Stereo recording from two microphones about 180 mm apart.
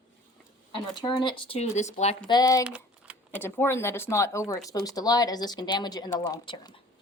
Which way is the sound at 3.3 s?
10° left (ahead or behind).